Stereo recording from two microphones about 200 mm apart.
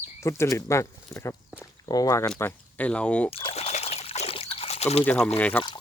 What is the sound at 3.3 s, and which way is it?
Trickle, 30° left (ahead or behind).